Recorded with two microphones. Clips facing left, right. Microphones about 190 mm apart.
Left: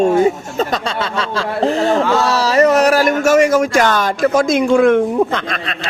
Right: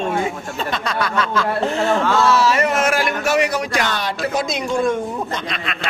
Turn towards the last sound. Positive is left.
turn(degrees=65)  # may be behind; listen again after turning